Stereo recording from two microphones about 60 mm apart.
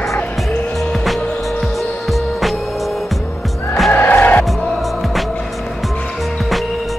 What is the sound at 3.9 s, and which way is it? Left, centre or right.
Music, left.